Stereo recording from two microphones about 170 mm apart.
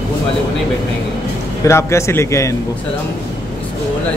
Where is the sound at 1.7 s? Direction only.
15° left (ahead or behind).